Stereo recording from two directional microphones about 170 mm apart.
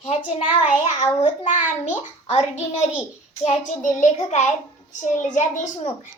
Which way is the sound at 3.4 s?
45° left (ahead or behind).